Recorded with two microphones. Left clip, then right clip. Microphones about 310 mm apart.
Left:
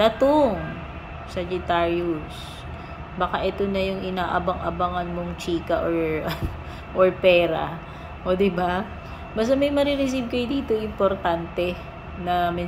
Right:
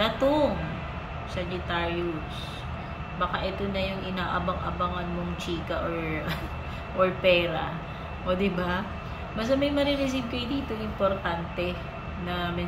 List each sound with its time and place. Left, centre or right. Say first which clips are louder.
0.0 s speech: left 6 dB; centre
3.2 s speech: left 5 dB; centre
7.0 s a woman's voice: left 5 dB; centre